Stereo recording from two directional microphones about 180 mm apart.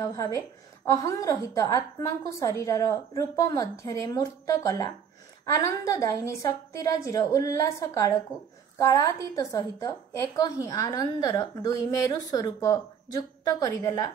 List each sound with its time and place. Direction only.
0.0 s a woman's voice: 20° left (ahead or behind)